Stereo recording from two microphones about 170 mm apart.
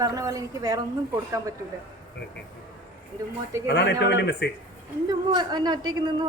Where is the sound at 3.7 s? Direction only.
90° left.